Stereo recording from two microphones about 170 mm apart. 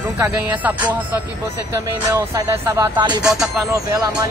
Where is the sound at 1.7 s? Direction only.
20° right (ahead or behind).